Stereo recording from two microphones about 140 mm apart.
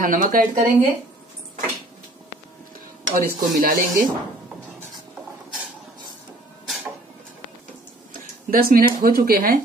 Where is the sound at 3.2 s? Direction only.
90° right.